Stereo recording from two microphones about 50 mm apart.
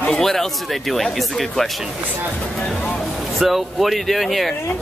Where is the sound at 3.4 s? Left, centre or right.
Centre.